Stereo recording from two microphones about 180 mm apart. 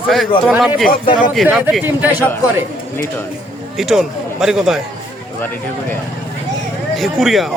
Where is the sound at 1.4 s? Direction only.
10° right (ahead or behind).